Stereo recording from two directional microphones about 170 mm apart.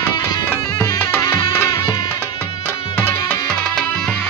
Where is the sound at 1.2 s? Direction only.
20° left (ahead or behind).